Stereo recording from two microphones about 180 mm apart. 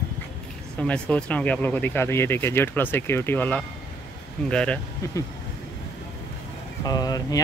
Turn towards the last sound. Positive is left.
turn(degrees=20)  # may be behind; listen again after turning